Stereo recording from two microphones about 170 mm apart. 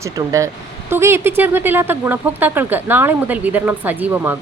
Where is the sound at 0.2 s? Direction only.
20° right (ahead or behind).